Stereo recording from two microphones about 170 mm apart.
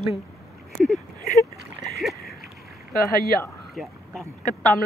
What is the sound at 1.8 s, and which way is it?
Splash, centre (ahead or behind).